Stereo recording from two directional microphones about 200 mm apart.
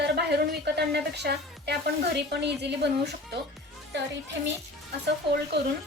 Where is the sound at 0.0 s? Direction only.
55° right (ahead or behind).